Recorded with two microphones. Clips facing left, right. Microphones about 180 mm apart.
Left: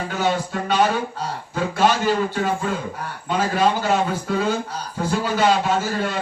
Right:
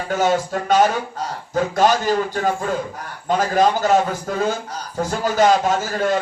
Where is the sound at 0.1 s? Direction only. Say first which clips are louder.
Right 6 dB; 45° right (ahead or behind).